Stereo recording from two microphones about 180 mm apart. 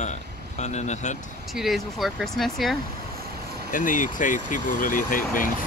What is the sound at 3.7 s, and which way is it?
Speech, 45° left (ahead or behind).